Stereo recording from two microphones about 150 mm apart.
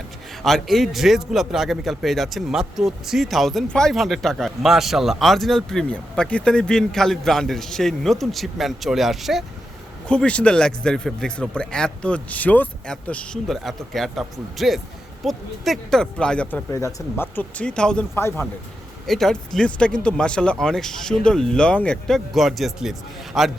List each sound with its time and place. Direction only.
0.4 s a man's voice: centre (ahead or behind)
16.7 s speech: 20° left (ahead or behind)
18.1 s speech: 15° left (ahead or behind)
19.0 s a man's voice: centre (ahead or behind)